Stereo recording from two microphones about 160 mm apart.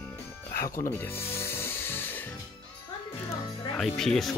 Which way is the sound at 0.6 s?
65° left (ahead or behind).